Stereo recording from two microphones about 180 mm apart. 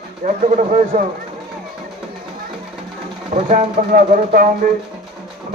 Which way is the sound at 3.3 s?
45° right (ahead or behind).